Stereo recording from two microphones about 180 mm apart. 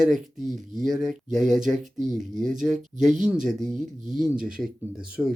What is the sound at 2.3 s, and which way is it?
Speech, 45° right (ahead or behind).